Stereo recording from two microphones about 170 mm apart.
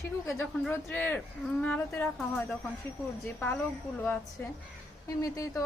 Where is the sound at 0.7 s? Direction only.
10° left (ahead or behind).